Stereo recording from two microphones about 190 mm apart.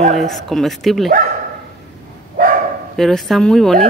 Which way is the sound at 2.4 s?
45° right (ahead or behind).